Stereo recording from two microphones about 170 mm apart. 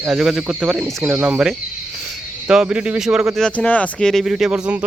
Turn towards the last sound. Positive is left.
turn(degrees=-5)  # may be behind; listen again after turning